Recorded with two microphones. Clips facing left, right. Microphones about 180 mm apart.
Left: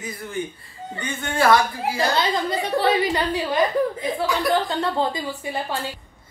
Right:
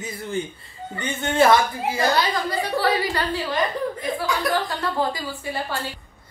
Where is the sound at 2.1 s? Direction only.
20° left (ahead or behind).